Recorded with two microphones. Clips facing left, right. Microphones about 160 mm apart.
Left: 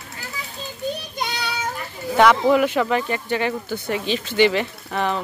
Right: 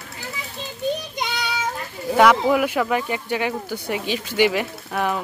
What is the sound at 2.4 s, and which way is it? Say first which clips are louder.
Speech: left 2 dB; 10° right (ahead or behind).